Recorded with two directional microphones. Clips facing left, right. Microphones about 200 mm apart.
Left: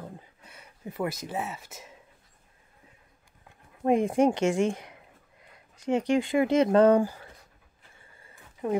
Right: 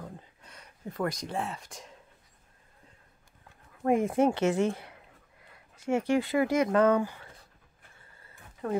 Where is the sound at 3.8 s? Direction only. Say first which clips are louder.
Left 2 dB; 20° left (ahead or behind); by 7.3 s 35° left (ahead or behind).